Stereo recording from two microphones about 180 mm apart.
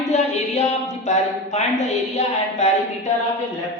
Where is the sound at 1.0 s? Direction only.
40° left (ahead or behind).